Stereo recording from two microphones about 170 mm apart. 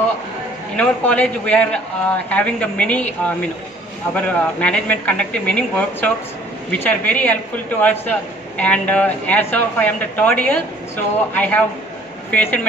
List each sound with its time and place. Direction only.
0.7 s speech: 5° left (ahead or behind)